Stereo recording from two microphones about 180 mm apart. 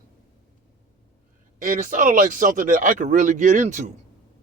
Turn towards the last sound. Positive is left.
turn(degrees=-45)  # may be behind; listen again after turning